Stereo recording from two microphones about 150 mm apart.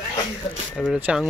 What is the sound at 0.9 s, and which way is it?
Speech, 5° right (ahead or behind).